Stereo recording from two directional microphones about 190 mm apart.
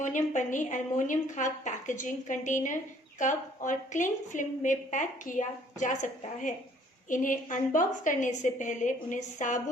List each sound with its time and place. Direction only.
0.0 s a woman's voice: 40° left (ahead or behind)